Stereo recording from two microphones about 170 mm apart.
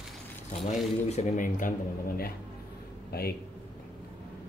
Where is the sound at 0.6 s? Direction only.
45° left (ahead or behind).